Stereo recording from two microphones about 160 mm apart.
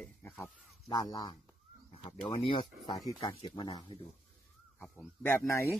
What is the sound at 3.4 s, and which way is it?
Speech, 30° left (ahead or behind).